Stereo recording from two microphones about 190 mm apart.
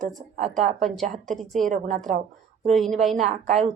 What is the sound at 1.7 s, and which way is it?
A woman's voice, 40° right (ahead or behind).